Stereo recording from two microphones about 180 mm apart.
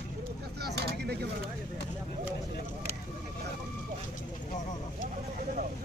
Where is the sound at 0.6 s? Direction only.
65° right (ahead or behind).